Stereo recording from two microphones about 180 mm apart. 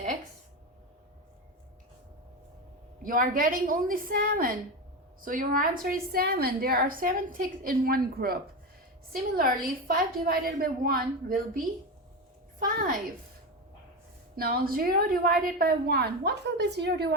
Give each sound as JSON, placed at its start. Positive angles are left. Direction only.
{"t": 3.0, "sound": "a woman's voice", "side_deg": -50}
{"t": 9.8, "sound": "a woman's voice", "side_deg": -55}
{"t": 14.3, "sound": "a woman's voice", "side_deg": -60}